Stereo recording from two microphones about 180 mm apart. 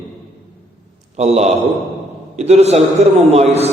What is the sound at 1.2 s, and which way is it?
A man's voice, 40° right (ahead or behind).